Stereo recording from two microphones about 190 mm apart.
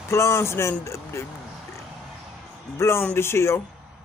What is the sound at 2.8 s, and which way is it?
Speech, 15° left (ahead or behind).